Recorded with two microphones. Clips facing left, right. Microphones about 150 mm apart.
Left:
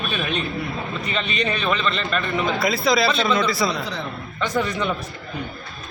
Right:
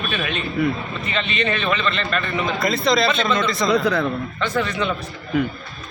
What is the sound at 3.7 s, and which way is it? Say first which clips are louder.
Speech: right 9 dB; 60° right (ahead or behind).